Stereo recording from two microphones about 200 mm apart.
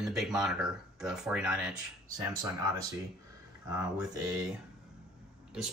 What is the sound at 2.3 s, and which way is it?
Speech, 15° right (ahead or behind).